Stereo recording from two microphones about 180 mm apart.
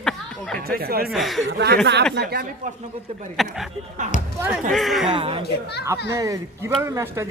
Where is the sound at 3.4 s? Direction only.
Centre (ahead or behind).